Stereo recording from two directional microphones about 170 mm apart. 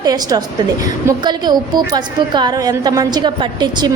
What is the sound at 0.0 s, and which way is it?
A woman's voice, 20° right (ahead or behind).